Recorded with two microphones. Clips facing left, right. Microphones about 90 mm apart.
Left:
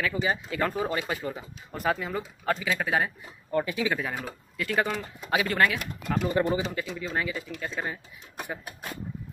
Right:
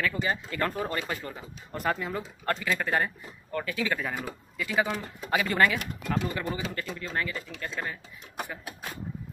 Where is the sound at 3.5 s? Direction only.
20° left (ahead or behind).